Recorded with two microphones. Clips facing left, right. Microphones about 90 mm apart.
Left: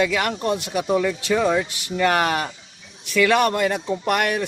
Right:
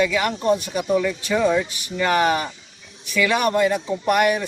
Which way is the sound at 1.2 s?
60° left (ahead or behind).